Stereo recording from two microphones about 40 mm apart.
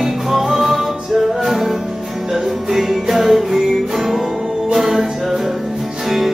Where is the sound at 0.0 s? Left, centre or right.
Centre.